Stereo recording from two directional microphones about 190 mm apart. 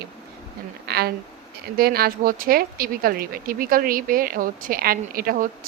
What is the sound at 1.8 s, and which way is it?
Speech, 50° right (ahead or behind).